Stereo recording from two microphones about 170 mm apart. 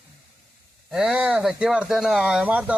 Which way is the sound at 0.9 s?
5° right (ahead or behind).